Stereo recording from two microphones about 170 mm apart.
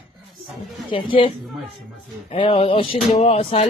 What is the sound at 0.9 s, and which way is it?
Speech, 30° left (ahead or behind).